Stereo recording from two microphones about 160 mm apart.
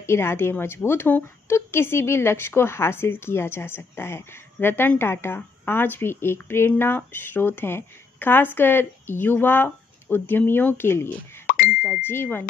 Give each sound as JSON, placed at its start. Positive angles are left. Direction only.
{"t": 0.0, "sound": "a woman's voice", "side_deg": 15}
{"t": 11.4, "sound": "plop", "side_deg": 60}
{"t": 11.8, "sound": "a woman's voice", "side_deg": 15}